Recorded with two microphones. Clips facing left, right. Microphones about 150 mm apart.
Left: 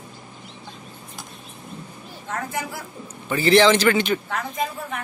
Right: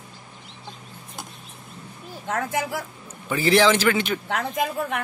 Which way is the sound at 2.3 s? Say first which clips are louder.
Right 3 dB; 80° right.